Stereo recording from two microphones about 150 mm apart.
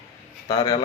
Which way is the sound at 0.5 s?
30° left (ahead or behind).